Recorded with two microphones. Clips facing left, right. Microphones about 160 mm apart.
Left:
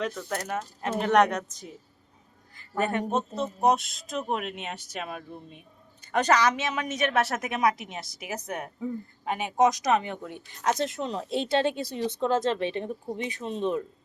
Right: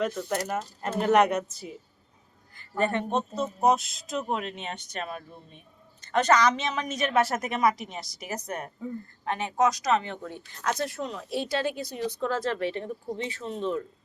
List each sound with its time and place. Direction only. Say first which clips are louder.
0.2 s speech: right 2 dB; 5° right (ahead or behind)
2.6 s a woman's voice: right 1 dB; 5° left (ahead or behind)